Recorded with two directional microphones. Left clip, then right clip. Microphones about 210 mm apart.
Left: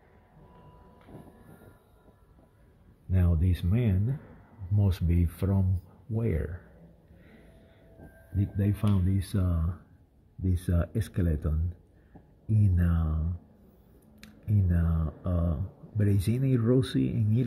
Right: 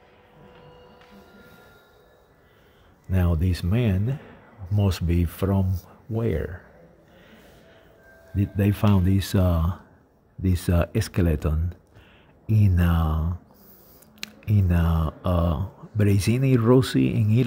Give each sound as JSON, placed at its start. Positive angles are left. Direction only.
{"t": 3.1, "sound": "speech", "side_deg": -10}
{"t": 8.4, "sound": "speech", "side_deg": -20}
{"t": 14.2, "sound": "speech", "side_deg": -20}